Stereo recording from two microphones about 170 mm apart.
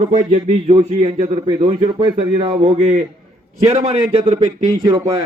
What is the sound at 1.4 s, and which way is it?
A man's voice, 30° right (ahead or behind).